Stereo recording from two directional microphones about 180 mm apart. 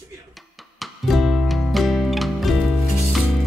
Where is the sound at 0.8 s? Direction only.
Centre (ahead or behind).